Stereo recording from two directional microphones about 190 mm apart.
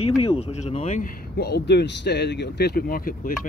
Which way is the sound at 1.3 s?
60° left (ahead or behind).